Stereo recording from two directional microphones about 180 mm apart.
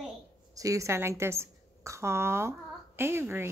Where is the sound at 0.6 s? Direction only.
20° right (ahead or behind).